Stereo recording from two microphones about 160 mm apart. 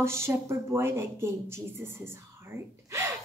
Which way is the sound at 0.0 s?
15° right (ahead or behind).